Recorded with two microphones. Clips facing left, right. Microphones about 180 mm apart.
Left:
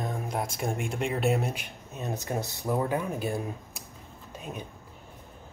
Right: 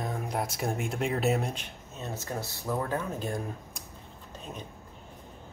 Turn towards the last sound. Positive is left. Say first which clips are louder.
# left 3 dB
turn(degrees=10)  # may be behind; listen again after turning